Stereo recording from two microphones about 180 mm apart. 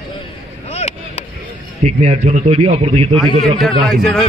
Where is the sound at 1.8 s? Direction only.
35° right (ahead or behind).